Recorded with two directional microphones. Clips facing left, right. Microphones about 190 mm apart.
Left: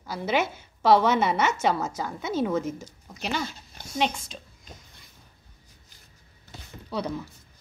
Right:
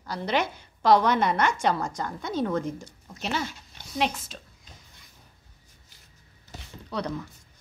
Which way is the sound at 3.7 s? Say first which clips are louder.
Left 3 dB; 45° left (ahead or behind).